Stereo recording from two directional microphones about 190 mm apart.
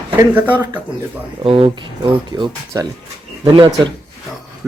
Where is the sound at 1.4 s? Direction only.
30° right (ahead or behind).